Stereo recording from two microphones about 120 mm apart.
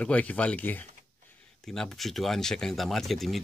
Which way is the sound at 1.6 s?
5° left (ahead or behind).